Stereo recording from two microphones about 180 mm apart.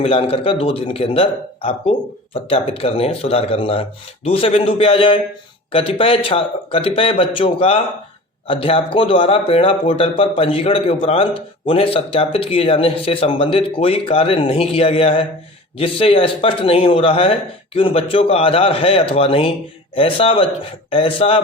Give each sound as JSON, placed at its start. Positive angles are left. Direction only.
{"t": 0.0, "sound": "a man's voice", "side_deg": 30}